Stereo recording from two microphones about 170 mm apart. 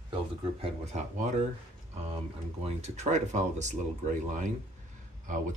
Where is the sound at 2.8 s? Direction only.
40° right (ahead or behind).